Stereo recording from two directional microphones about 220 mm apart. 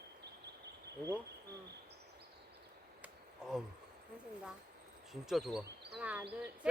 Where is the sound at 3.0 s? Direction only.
5° right (ahead or behind).